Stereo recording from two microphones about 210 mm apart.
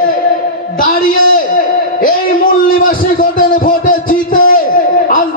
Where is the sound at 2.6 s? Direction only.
40° left (ahead or behind).